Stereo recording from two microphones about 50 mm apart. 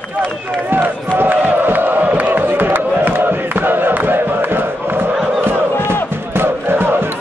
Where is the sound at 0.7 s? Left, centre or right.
Right.